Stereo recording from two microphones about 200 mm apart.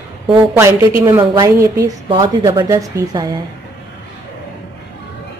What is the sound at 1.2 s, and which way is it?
A woman's voice, 20° right (ahead or behind).